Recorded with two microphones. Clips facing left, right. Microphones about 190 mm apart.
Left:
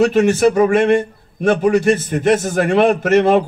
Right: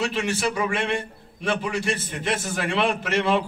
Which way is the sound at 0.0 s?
45° left (ahead or behind).